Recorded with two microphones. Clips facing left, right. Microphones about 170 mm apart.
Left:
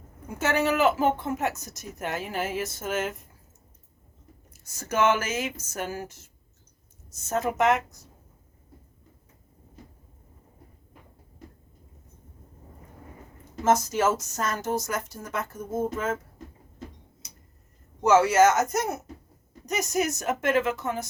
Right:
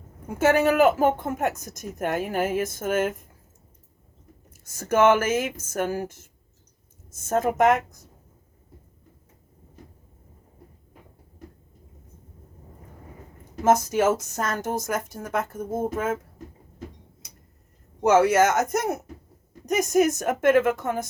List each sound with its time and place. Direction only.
0.3 s speech: 50° right (ahead or behind)
4.5 s speech: 50° right (ahead or behind)
13.7 s speech: 55° right (ahead or behind)
18.0 s speech: 55° right (ahead or behind)